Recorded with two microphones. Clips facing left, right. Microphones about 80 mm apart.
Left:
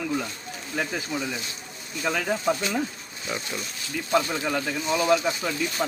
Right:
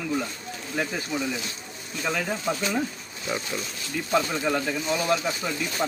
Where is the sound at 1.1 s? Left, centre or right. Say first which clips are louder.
Right 1 dB; centre.